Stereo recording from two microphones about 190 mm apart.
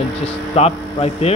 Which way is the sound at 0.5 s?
35° left (ahead or behind).